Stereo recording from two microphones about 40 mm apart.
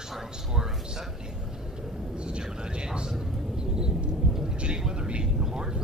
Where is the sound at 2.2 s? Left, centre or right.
Right.